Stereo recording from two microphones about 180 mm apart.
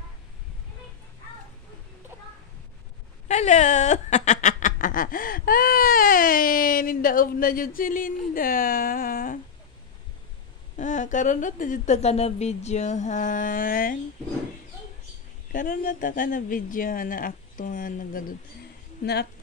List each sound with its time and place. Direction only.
3.3 s speech: 40° left (ahead or behind)
10.8 s speech: 45° left (ahead or behind)
15.5 s speech: 45° left (ahead or behind)